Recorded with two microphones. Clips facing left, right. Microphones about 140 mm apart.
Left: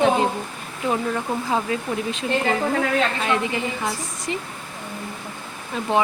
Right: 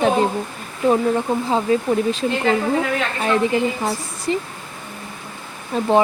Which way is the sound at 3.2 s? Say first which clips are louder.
Right 5 dB; 35° right (ahead or behind).